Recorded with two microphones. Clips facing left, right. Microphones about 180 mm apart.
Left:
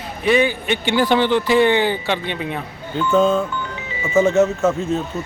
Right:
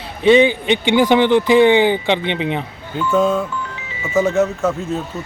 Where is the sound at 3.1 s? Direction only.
5° right (ahead or behind).